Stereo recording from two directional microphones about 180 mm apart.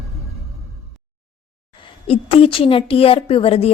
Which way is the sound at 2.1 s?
30° left (ahead or behind).